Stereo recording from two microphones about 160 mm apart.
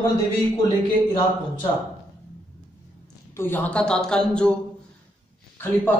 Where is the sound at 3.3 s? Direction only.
10° left (ahead or behind).